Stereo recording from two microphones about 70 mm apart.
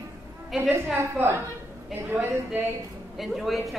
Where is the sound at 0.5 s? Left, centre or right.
Centre.